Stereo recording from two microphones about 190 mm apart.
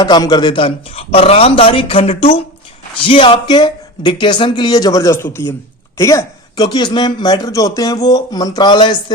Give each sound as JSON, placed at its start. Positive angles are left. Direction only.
{"t": 0.0, "sound": "speech", "side_deg": 20}